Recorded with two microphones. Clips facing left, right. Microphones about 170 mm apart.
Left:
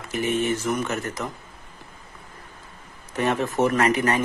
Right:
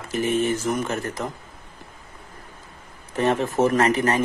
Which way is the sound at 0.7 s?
30° right (ahead or behind).